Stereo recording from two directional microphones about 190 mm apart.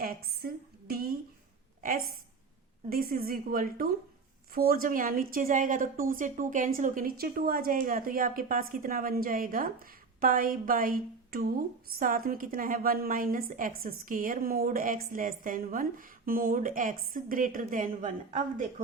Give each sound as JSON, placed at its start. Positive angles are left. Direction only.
{"t": 0.0, "sound": "a woman's voice", "side_deg": -55}